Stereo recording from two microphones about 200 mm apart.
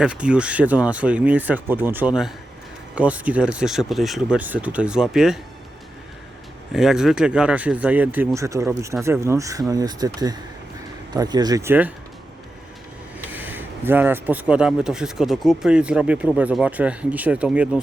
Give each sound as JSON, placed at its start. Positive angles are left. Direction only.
{"t": 0.0, "sound": "speech", "side_deg": -5}
{"t": 6.7, "sound": "speech", "side_deg": 0}
{"t": 11.1, "sound": "speech", "side_deg": -20}
{"t": 13.3, "sound": "speech", "side_deg": -10}